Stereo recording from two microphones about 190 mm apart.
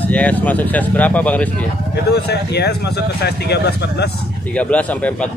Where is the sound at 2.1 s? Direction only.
60° left (ahead or behind).